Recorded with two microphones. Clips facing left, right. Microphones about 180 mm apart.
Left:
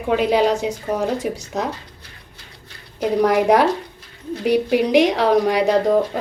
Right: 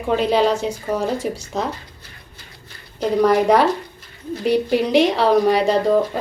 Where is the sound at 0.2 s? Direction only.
15° left (ahead or behind).